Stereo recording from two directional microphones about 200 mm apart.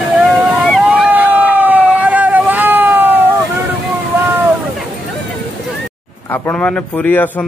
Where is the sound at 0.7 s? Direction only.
Centre (ahead or behind).